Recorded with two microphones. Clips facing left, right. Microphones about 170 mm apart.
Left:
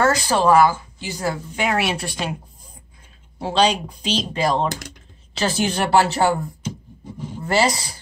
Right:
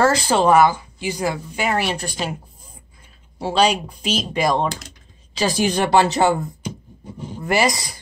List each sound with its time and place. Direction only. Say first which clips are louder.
0.0 s speech: right 1 dB; 30° right (ahead or behind)
1.6 s a woman's voice: even; centre (ahead or behind)
3.3 s speech: right 1 dB; 10° right (ahead or behind)
7.4 s speech: even; 15° right (ahead or behind)